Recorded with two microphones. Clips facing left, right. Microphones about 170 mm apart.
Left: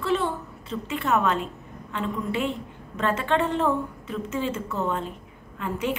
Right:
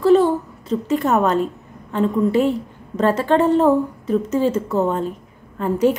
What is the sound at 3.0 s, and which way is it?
A woman's voice, 40° right (ahead or behind).